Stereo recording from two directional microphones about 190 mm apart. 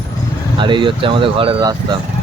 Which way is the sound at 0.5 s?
25° right (ahead or behind).